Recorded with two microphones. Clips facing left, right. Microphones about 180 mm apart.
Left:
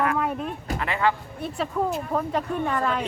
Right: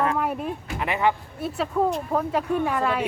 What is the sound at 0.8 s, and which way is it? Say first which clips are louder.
Speech: right 1 dB; 20° right (ahead or behind).